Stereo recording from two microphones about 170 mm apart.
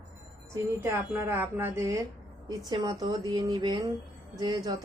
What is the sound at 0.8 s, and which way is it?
Speech, 15° right (ahead or behind).